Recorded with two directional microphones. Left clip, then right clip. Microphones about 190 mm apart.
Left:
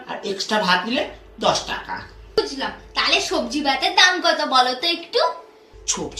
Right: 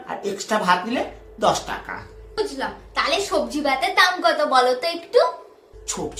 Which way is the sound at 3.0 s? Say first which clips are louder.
Left 2 dB; 15° right (ahead or behind).